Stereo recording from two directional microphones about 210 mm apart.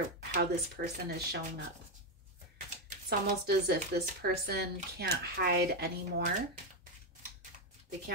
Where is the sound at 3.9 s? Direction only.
50° right (ahead or behind).